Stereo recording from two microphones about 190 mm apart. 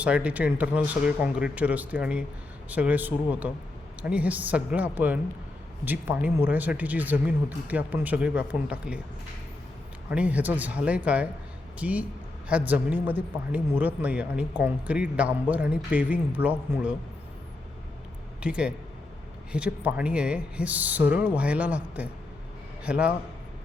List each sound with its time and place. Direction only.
0.0 s speech: 5° right (ahead or behind)
10.1 s speech: 5° right (ahead or behind)
18.4 s speech: 5° right (ahead or behind)